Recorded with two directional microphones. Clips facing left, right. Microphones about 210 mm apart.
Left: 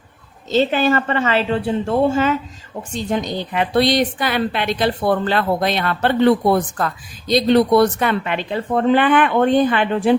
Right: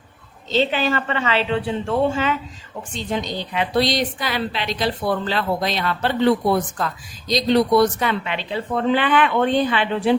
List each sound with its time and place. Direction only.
0.5 s a woman's voice: 45° left (ahead or behind)